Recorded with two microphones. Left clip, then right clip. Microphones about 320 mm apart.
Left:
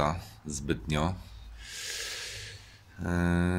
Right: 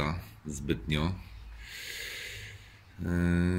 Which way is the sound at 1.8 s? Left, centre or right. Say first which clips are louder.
Left 2 dB; centre.